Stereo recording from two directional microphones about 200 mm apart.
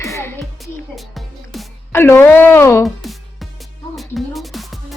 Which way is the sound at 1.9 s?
10° left (ahead or behind).